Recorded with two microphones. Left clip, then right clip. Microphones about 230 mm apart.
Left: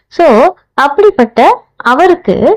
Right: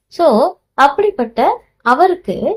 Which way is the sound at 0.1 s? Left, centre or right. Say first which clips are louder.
Left 6 dB; left.